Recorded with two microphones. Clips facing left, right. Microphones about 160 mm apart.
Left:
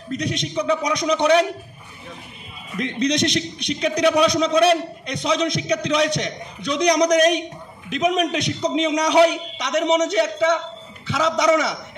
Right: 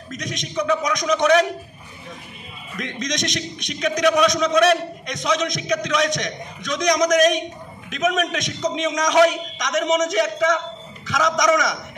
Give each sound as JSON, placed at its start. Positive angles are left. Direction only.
{"t": 0.1, "sound": "a man's voice", "side_deg": 30}
{"t": 2.7, "sound": "a man's voice", "side_deg": 30}